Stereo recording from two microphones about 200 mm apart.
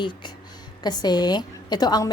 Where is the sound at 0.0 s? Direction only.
25° left (ahead or behind).